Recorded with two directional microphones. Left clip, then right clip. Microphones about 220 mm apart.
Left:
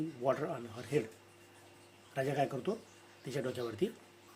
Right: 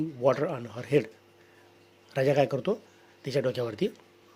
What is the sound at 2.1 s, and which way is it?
Speech, 50° right (ahead or behind).